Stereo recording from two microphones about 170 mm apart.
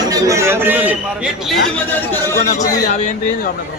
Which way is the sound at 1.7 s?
10° left (ahead or behind).